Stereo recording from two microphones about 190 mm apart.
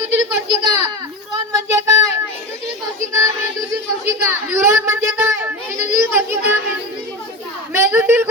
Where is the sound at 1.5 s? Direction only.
15° right (ahead or behind).